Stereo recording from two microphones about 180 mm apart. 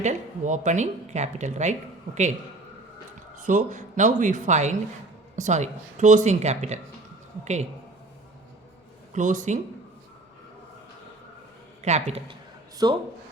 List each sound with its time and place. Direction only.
0.0 s speech: 40° right (ahead or behind)
3.3 s a man's voice: 45° right (ahead or behind)
9.1 s a man's voice: 45° right (ahead or behind)
11.8 s speech: 40° right (ahead or behind)
12.7 s speech: 25° right (ahead or behind)